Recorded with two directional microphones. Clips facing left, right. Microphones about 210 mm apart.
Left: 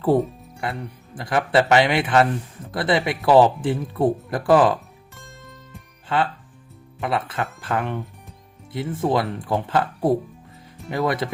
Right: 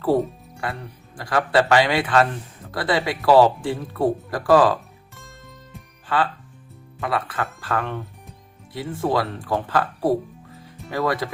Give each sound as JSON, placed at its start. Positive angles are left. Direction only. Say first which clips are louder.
{"t": 1.1, "sound": "speech", "louder": "even", "side_deg": 20}
{"t": 5.1, "sound": "music", "louder": "left 1 dB", "side_deg": 0}
{"t": 6.1, "sound": "speech", "louder": "even", "side_deg": 25}